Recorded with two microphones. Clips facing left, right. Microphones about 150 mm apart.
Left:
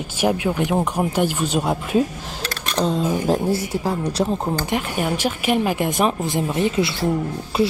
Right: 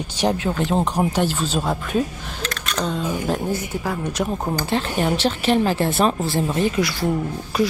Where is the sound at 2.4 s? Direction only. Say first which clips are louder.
Left 3 dB; 30° left (ahead or behind).